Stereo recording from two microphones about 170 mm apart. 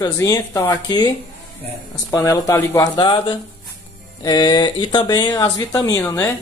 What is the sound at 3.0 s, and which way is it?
Speech, 25° left (ahead or behind).